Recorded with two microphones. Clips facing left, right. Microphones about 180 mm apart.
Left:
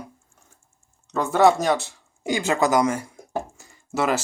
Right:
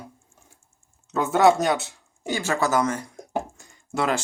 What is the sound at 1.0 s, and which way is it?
Speech, centre (ahead or behind).